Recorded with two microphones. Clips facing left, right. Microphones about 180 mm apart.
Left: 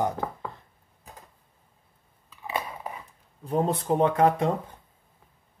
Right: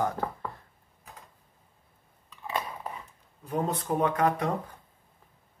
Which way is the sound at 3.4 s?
30° left (ahead or behind).